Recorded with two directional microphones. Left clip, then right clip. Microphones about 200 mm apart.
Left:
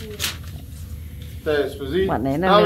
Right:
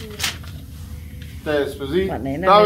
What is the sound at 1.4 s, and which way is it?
Speech, 30° right (ahead or behind).